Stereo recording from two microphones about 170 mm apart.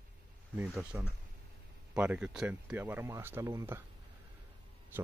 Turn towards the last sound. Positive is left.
turn(degrees=-15)  # may be behind; listen again after turning